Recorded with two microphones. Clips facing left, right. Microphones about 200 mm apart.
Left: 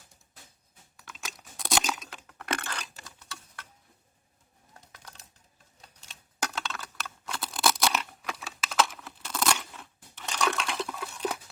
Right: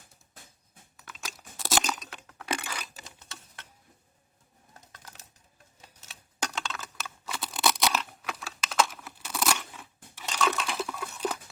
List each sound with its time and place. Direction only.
0.9 s a sound: centre (ahead or behind)
2.5 s crushing: 10° right (ahead or behind)
3.0 s sewing machine: 20° right (ahead or behind)
6.1 s computer keyboard: 5° left (ahead or behind)
9.7 s crunch: 5° right (ahead or behind)
10.4 s toothbrush: 5° right (ahead or behind)
10.9 s a sound: centre (ahead or behind)